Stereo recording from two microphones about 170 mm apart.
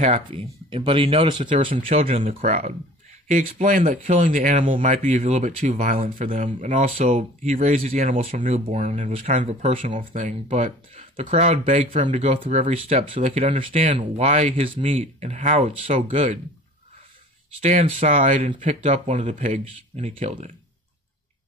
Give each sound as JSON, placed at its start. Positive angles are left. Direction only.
{"t": 0.0, "sound": "speech", "side_deg": -35}
{"t": 17.6, "sound": "speech", "side_deg": -40}